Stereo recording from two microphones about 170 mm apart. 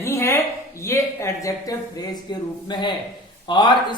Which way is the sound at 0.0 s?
15° left (ahead or behind).